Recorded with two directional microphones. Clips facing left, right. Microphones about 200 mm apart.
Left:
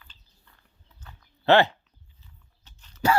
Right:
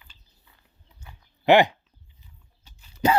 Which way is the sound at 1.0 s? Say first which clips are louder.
Even; 15° right (ahead or behind).